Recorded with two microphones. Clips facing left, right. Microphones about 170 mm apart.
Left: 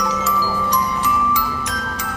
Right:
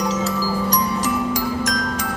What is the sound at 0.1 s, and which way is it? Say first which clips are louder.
Glockenspiel: even; 35° right (ahead or behind).